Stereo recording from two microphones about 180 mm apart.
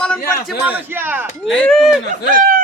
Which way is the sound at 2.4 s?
45° right (ahead or behind).